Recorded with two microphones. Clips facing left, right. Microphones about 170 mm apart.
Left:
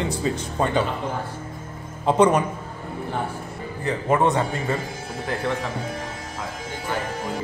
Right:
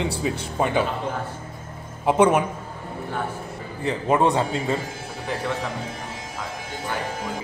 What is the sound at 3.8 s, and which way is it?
Speech, 15° right (ahead or behind).